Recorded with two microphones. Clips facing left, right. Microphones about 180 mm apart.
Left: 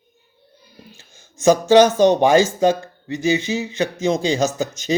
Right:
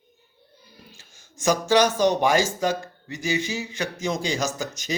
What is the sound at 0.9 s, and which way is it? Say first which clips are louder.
Speech: left 2 dB; 25° left (ahead or behind).